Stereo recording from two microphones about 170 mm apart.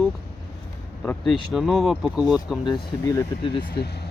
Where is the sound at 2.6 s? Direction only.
20° left (ahead or behind).